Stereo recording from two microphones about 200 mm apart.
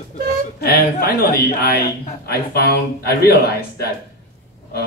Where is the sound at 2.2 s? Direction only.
55° left (ahead or behind).